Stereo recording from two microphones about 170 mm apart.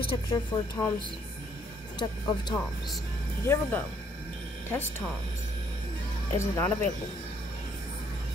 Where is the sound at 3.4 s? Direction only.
15° left (ahead or behind).